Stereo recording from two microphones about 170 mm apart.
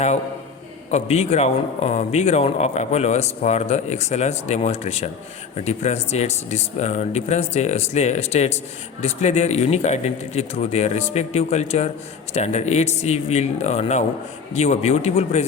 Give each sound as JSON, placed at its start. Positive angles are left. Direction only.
{"t": 0.9, "sound": "a man's voice", "side_deg": 40}